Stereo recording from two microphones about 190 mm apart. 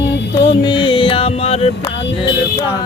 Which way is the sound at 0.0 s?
65° left (ahead or behind).